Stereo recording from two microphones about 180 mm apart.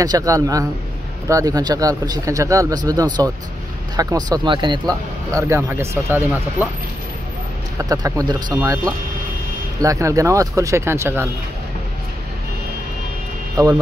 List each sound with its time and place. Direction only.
0.0 s speech: 20° right (ahead or behind)
7.9 s speech: 20° right (ahead or behind)
13.6 s speech: 20° right (ahead or behind)